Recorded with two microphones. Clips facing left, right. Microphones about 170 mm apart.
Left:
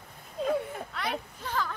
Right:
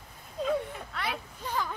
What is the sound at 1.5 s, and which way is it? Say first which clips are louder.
Speech: even; 15° right (ahead or behind).